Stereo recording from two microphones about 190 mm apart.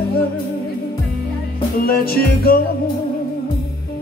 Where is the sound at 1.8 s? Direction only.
50° left (ahead or behind).